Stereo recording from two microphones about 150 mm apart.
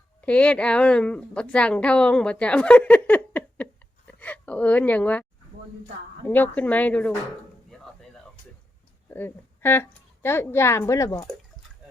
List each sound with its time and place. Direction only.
0.2 s a woman's voice: 10° left (ahead or behind)
6.2 s speech: 10° left (ahead or behind)
9.0 s speech: 15° left (ahead or behind)